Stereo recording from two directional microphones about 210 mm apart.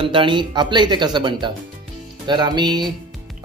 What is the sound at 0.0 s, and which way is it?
A man's voice, 25° right (ahead or behind).